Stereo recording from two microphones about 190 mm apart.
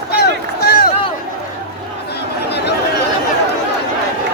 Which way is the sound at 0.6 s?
55° left (ahead or behind).